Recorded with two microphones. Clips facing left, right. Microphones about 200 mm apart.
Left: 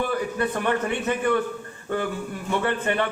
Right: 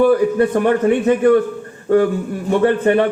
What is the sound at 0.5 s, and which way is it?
Speech, 50° right (ahead or behind).